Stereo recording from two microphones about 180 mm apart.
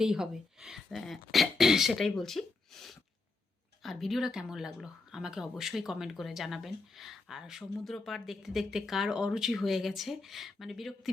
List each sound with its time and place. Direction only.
0.0 s speech: 5° right (ahead or behind)